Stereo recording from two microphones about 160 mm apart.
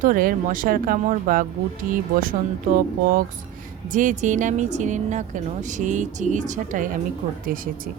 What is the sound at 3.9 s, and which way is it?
Speech, 50° right (ahead or behind).